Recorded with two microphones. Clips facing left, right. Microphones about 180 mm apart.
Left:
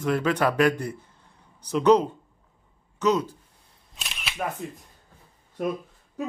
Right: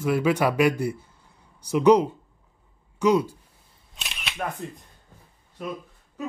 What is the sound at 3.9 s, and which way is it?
Single-lens reflex camera, centre (ahead or behind).